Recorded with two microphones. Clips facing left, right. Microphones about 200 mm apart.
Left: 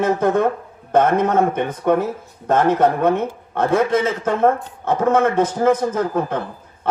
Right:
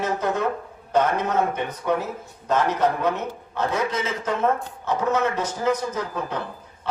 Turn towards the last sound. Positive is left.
turn(degrees=50)  # may be behind; listen again after turning